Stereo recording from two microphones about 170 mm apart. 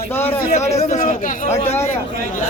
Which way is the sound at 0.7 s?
50° left (ahead or behind).